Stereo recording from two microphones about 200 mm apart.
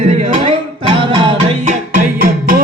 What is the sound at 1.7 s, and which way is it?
Music, 45° right (ahead or behind).